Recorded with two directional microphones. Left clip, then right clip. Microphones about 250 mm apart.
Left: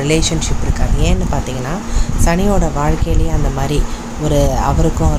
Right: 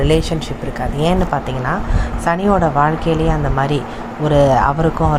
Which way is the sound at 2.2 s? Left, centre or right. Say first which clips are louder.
Right 2 dB; centre.